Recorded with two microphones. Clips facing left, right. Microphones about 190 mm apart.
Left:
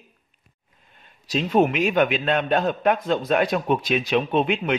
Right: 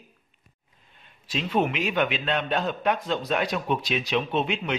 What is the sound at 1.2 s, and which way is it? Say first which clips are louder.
A man's voice: left 6 dB; 40° left (ahead or behind).